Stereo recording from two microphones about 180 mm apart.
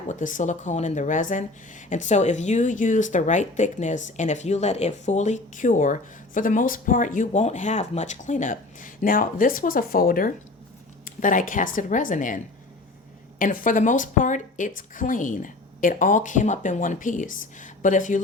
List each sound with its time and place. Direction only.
0.1 s speech: 45° left (ahead or behind)
13.4 s speech: 50° left (ahead or behind)